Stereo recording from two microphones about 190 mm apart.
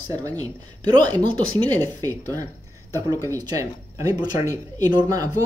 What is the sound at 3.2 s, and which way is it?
Speech, 15° right (ahead or behind).